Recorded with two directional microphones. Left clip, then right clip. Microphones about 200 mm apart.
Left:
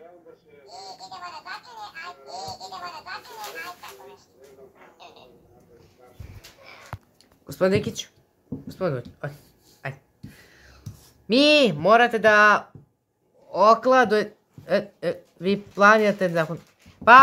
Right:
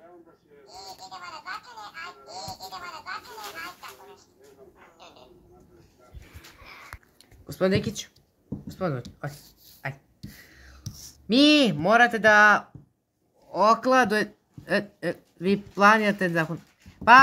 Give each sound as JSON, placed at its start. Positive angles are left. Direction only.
{"t": 0.7, "sound": "music", "side_deg": -20}
{"t": 7.4, "sound": "speech", "side_deg": 0}
{"t": 8.6, "sound": "a sound", "side_deg": 0}
{"t": 9.2, "sound": "speech", "side_deg": 0}
{"t": 9.8, "sound": "a sound", "side_deg": 0}
{"t": 11.2, "sound": "speech", "side_deg": 0}